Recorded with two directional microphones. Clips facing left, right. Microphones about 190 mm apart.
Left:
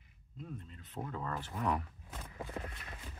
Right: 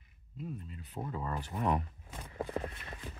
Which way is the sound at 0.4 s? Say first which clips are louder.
Right 4 dB; 5° right (ahead or behind).